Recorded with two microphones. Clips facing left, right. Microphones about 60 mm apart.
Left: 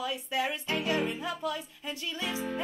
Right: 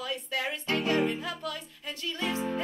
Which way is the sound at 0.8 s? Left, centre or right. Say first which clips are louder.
Right 3 dB; right.